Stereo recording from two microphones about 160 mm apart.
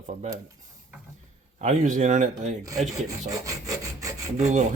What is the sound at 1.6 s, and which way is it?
Rub, 50° right (ahead or behind).